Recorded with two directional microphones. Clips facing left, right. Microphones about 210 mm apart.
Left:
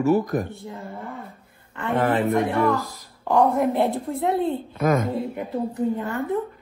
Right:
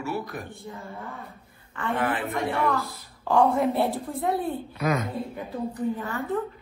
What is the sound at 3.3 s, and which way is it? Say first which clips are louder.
Speech: left 2 dB; centre (ahead or behind).